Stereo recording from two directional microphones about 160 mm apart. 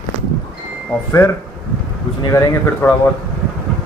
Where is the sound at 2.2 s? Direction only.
20° left (ahead or behind).